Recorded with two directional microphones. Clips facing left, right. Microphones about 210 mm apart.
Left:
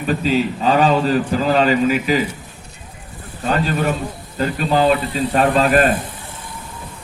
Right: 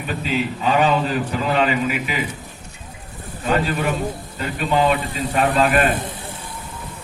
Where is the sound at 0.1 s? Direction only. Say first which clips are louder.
Left 6 dB; 40° left (ahead or behind).